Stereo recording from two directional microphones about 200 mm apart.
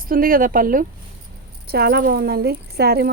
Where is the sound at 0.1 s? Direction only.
45° right (ahead or behind).